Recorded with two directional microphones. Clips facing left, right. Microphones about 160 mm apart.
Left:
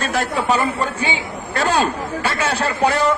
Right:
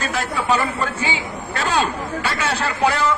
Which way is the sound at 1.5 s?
35° left (ahead or behind).